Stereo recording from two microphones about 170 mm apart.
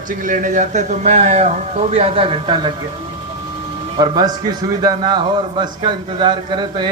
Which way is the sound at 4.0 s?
25° right (ahead or behind).